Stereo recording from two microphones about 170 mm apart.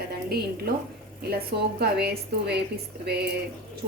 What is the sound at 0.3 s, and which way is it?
A woman's voice, 65° right (ahead or behind).